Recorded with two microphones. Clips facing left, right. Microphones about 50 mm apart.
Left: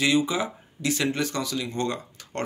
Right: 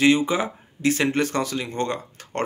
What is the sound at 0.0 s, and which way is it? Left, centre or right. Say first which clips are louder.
Speech: right 4 dB; right.